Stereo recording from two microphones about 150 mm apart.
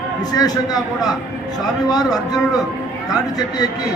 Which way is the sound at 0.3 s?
25° left (ahead or behind).